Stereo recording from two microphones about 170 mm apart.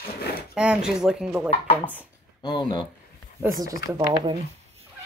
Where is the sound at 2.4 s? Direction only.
25° left (ahead or behind).